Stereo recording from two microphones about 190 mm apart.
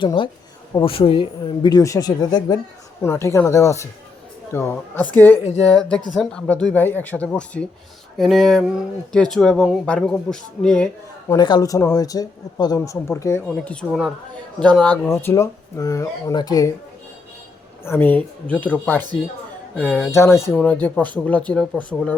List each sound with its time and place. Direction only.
0.0 s speech: 25° left (ahead or behind); by 10.8 s 5° left (ahead or behind)
11.3 s speech: 25° left (ahead or behind)
17.8 s speech: 10° left (ahead or behind)